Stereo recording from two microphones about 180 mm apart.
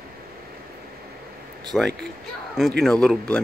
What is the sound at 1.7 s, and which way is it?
Speech, 5° left (ahead or behind).